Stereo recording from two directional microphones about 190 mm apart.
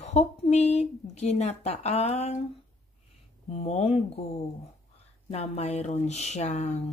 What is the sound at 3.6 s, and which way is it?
Speech, 35° left (ahead or behind).